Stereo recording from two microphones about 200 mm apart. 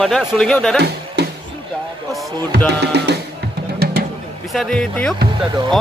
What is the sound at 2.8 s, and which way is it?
Music, 55° right (ahead or behind).